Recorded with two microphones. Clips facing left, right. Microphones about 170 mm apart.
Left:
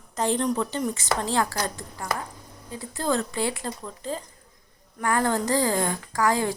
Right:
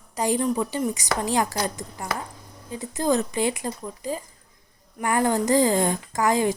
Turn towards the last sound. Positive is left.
turn(degrees=-20)  # may be behind; listen again after turning